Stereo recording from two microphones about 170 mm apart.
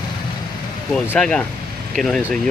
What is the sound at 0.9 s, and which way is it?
Speech, 5° left (ahead or behind).